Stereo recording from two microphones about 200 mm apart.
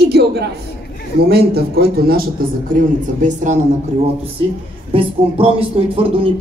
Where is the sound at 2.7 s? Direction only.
40° right (ahead or behind).